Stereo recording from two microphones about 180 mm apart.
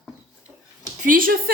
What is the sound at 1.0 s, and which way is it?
Speech, 50° right (ahead or behind).